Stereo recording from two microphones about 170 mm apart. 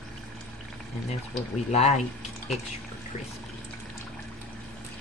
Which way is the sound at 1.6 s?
40° left (ahead or behind).